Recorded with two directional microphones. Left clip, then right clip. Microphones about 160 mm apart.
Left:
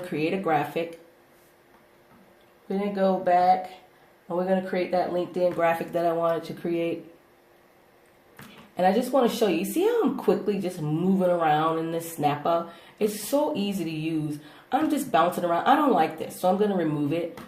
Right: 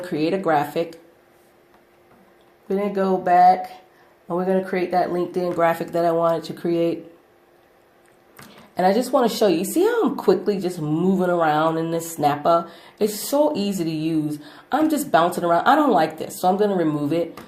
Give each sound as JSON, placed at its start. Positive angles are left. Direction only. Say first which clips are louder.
{"t": 0.0, "sound": "speech", "louder": "right 5 dB", "side_deg": -45}
{"t": 2.6, "sound": "speech", "louder": "right 3 dB", "side_deg": -60}
{"t": 5.5, "sound": "speech", "louder": "right 5 dB", "side_deg": -40}
{"t": 8.7, "sound": "speech", "louder": "right 4 dB", "side_deg": -45}